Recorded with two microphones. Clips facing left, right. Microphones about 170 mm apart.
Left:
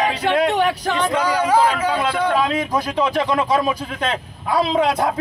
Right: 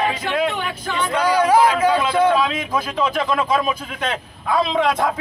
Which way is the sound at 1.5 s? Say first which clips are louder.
Right 2 dB; 10° right (ahead or behind).